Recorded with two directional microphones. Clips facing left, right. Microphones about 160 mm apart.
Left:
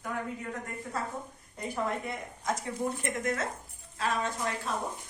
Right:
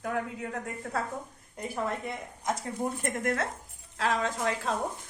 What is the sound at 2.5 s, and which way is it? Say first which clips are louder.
Speech: right 1 dB; 30° right (ahead or behind).